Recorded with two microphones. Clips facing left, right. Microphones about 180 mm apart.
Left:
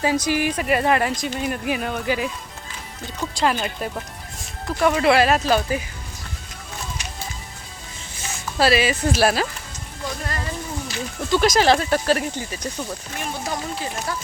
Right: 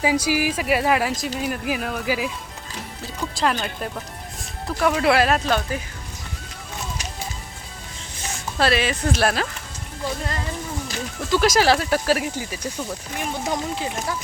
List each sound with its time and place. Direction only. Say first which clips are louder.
0.0 s a woman's voice: even; 10° right (ahead or behind); by 5.8 s 5° left (ahead or behind)
8.5 s a woman's voice: left 2 dB; 5° left (ahead or behind)
11.2 s speech: even; centre (ahead or behind); by 14.2 s 15° right (ahead or behind)